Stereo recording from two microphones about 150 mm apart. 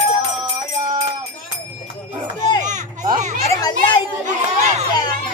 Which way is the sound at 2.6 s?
55° right (ahead or behind).